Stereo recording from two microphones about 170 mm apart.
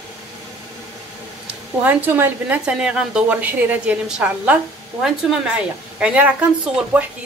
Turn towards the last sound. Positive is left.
turn(degrees=-5)  # may be behind; listen again after turning